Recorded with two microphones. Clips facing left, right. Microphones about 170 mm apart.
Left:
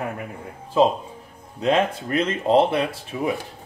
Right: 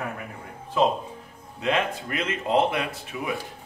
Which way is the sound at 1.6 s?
35° left (ahead or behind).